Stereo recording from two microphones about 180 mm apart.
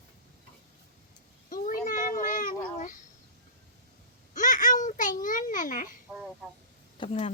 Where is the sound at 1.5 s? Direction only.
50° left (ahead or behind).